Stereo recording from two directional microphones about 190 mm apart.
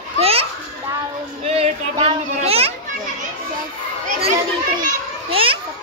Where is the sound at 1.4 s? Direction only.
30° right (ahead or behind).